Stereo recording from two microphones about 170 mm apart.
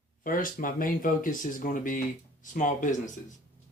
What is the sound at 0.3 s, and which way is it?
Speech, 55° left (ahead or behind).